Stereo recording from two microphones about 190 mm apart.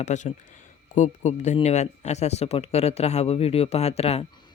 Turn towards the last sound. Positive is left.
turn(degrees=25)  # may be behind; listen again after turning